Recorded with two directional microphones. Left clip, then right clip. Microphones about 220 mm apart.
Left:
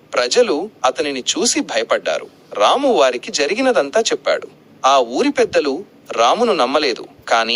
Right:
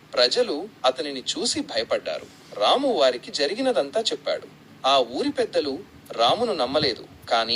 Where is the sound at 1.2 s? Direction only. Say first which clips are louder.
Left 9 dB; 45° left (ahead or behind).